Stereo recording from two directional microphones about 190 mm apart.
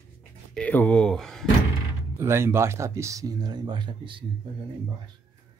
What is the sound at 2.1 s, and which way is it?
Speech, 15° right (ahead or behind).